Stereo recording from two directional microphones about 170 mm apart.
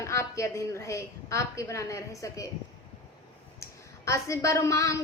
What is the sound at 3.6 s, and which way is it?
A woman's voice, 15° left (ahead or behind).